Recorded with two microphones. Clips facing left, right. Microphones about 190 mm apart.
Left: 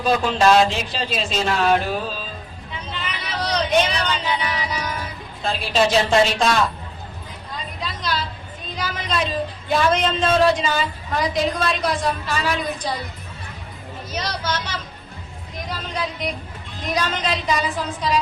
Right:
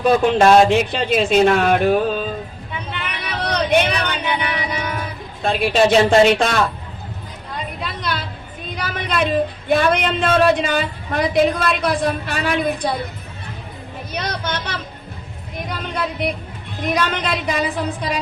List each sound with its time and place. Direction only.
0.0 s speech: 55° right (ahead or behind)
2.9 s a sound: 60° right (ahead or behind)
3.8 s speech: 60° right (ahead or behind)
4.3 s music: 60° right (ahead or behind)
5.4 s speech: 55° right (ahead or behind)
7.8 s a sound: 60° right (ahead or behind)
8.7 s speech: 60° right (ahead or behind)
14.1 s speech: 60° right (ahead or behind)
16.8 s speech: 60° right (ahead or behind)